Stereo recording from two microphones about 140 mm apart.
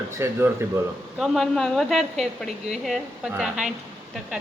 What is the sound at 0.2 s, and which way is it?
Speech, 15° right (ahead or behind).